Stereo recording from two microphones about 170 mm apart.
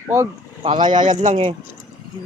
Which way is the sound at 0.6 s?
30° right (ahead or behind).